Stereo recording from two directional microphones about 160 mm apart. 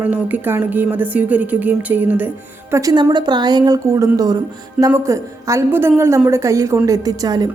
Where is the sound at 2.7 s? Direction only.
20° right (ahead or behind).